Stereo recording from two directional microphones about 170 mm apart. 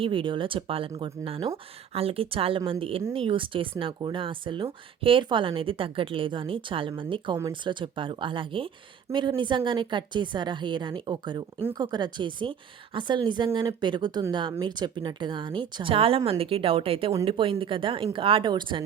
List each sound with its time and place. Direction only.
0.0 s speech: 30° right (ahead or behind)